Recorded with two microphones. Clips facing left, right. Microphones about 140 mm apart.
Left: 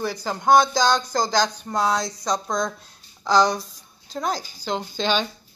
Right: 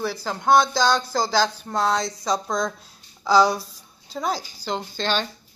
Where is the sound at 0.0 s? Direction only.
5° right (ahead or behind).